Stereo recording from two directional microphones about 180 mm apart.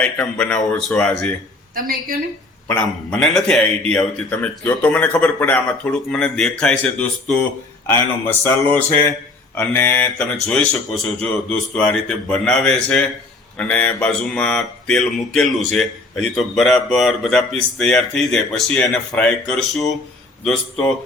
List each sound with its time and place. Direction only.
0.0 s a man's voice: 10° left (ahead or behind)
1.7 s a woman's voice: 50° right (ahead or behind)
2.6 s a man's voice: 5° left (ahead or behind)